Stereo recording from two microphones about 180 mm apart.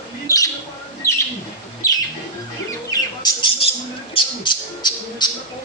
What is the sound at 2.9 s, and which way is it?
Speech, 25° left (ahead or behind).